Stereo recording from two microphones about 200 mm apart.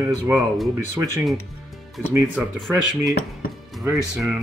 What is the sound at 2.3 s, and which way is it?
Speech, centre (ahead or behind).